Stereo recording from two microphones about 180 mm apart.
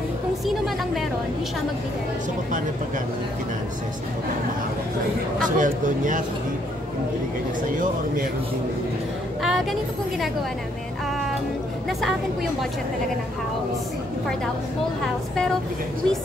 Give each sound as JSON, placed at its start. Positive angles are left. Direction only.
{"t": 5.6, "sound": "speech", "side_deg": -45}
{"t": 7.7, "sound": "speech", "side_deg": -50}
{"t": 9.4, "sound": "a sound", "side_deg": 0}